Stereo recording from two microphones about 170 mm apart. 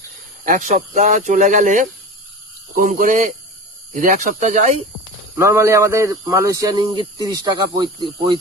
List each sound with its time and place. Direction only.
0.4 s speech: 50° right (ahead or behind)
5.4 s speech: 15° right (ahead or behind)